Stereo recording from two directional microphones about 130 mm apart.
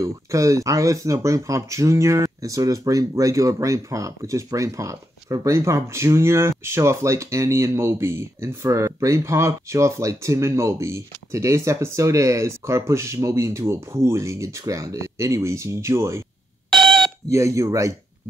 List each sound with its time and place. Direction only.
0.0 s speech: 25° right (ahead or behind)
17.3 s speech: 25° right (ahead or behind)